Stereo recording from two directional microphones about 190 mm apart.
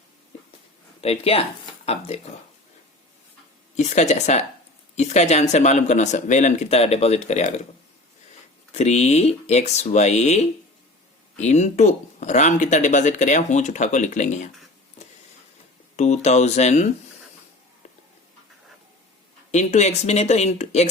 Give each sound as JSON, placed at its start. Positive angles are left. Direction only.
{"t": 1.0, "sound": "speech", "side_deg": 30}
{"t": 3.8, "sound": "speech", "side_deg": 40}
{"t": 8.7, "sound": "speech", "side_deg": 35}
{"t": 16.0, "sound": "speech", "side_deg": 35}
{"t": 19.5, "sound": "speech", "side_deg": 35}